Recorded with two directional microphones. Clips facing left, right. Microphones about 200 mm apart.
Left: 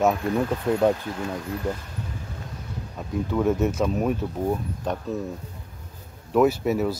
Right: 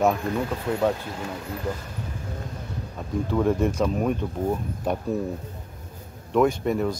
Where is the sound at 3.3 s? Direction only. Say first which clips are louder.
Even; centre (ahead or behind).